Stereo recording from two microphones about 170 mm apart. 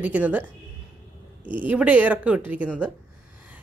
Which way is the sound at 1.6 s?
10° right (ahead or behind).